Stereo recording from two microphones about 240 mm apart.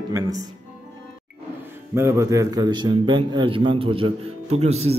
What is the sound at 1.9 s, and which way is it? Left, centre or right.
A man's voice, centre.